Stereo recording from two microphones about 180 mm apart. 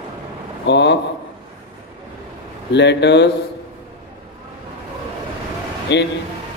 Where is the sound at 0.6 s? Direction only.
75° left (ahead or behind).